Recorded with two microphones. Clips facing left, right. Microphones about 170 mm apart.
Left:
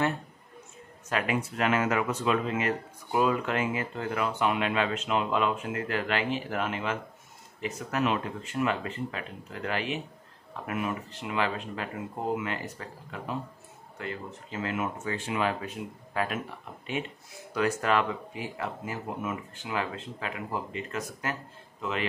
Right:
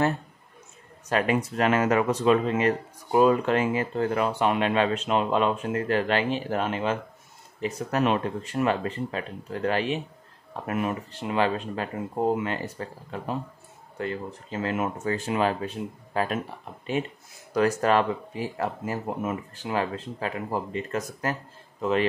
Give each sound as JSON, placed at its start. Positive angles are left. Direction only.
{"t": 1.0, "sound": "speech", "side_deg": -35}